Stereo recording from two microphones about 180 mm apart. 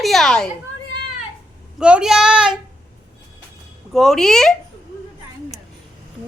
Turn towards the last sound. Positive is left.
turn(degrees=5)  # may be behind; listen again after turning